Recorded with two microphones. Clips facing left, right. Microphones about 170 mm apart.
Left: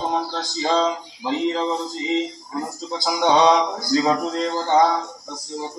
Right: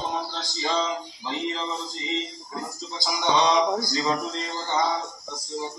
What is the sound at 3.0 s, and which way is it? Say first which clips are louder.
Music: left 6 dB; 55° left (ahead or behind).